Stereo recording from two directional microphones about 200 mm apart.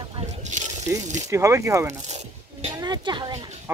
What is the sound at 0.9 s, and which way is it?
A woman's voice, 10° right (ahead or behind).